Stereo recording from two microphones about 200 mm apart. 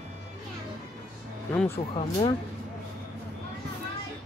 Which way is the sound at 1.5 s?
10° left (ahead or behind).